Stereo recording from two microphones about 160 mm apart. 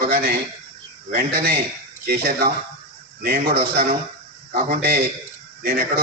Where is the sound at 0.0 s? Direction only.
65° right (ahead or behind).